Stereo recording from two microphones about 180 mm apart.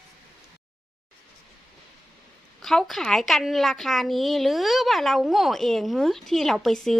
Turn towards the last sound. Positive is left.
turn(degrees=0)  # may be behind; listen again after turning